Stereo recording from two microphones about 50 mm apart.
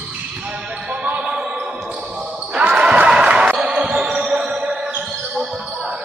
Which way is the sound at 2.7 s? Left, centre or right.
Right.